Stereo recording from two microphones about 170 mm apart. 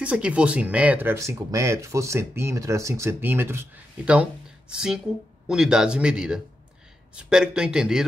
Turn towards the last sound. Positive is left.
turn(degrees=-5)  # may be behind; listen again after turning